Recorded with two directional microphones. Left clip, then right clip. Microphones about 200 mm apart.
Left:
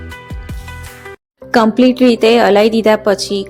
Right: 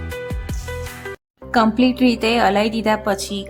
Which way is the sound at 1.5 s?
20° left (ahead or behind).